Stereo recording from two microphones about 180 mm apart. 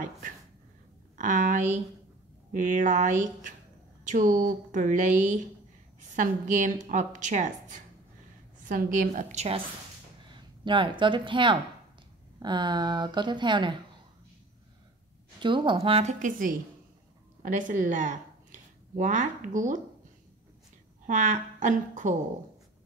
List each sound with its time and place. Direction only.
1.1 s a woman's voice: 45° right (ahead or behind)
10.3 s speech: 25° right (ahead or behind)
15.4 s a woman's voice: 25° right (ahead or behind); by 19.8 s 45° right (ahead or behind)
21.1 s a woman's voice: 45° right (ahead or behind)